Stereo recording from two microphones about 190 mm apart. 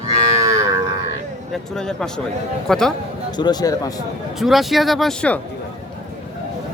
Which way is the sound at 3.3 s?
20° left (ahead or behind).